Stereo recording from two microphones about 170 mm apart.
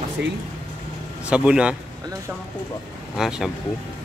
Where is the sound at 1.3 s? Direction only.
5° right (ahead or behind).